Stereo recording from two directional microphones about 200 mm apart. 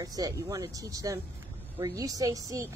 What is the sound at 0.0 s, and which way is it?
A woman's voice, 20° right (ahead or behind).